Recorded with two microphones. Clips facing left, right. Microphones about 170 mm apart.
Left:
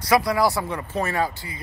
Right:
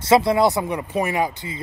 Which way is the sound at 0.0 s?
25° right (ahead or behind).